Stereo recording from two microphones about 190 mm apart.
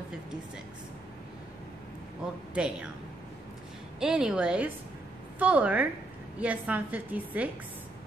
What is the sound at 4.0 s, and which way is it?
A woman's voice, 5° right (ahead or behind).